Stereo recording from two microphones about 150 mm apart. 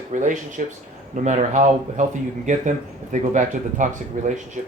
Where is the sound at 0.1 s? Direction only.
55° right (ahead or behind).